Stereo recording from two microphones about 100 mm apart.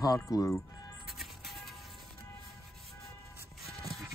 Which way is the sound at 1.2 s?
Centre (ahead or behind).